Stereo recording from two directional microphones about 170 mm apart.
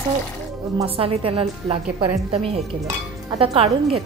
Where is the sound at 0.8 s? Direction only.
35° right (ahead or behind).